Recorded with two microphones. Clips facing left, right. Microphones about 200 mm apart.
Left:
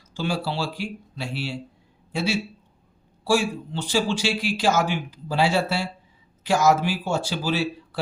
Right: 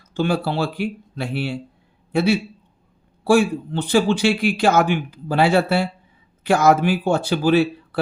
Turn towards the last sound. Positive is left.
turn(degrees=-60)  # may be behind; listen again after turning